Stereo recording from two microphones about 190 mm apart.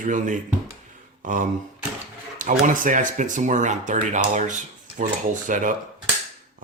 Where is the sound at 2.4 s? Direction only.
45° right (ahead or behind).